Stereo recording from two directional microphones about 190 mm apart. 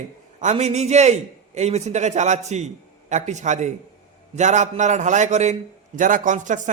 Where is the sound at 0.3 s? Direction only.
35° right (ahead or behind).